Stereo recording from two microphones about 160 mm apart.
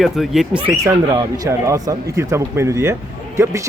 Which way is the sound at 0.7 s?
20° right (ahead or behind).